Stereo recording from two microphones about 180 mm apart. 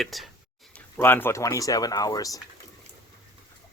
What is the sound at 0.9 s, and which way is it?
Speech, 10° left (ahead or behind).